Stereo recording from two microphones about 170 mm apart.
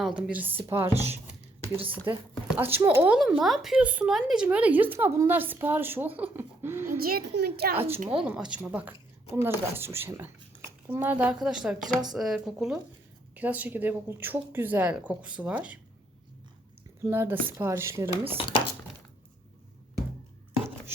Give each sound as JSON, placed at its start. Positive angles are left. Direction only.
{"t": 0.0, "sound": "speech", "side_deg": -10}
{"t": 2.6, "sound": "speech", "side_deg": -10}
{"t": 7.0, "sound": "a child's voice", "side_deg": -60}
{"t": 7.9, "sound": "speech", "side_deg": -35}
{"t": 8.2, "sound": "speech", "side_deg": -5}
{"t": 17.1, "sound": "speech", "side_deg": -15}